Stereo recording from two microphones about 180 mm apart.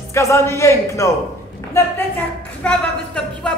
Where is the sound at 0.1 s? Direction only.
15° left (ahead or behind).